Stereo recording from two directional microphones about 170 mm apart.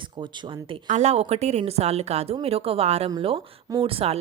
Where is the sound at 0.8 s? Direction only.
45° right (ahead or behind).